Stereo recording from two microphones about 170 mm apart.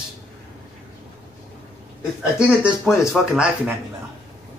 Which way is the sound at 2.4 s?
5° right (ahead or behind).